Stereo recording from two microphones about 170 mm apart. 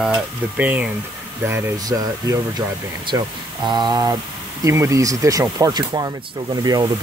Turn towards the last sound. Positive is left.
turn(degrees=-25)  # may be behind; listen again after turning